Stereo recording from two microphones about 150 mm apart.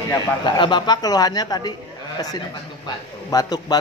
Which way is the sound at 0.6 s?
30° left (ahead or behind).